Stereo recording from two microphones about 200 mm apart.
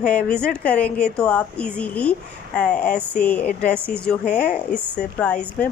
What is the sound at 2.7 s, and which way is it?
Speech, 40° left (ahead or behind).